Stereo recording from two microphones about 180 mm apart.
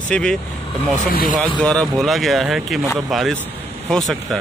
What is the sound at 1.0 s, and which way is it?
Speech, 50° left (ahead or behind).